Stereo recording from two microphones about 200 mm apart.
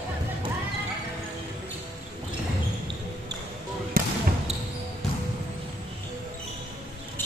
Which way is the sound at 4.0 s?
45° right (ahead or behind).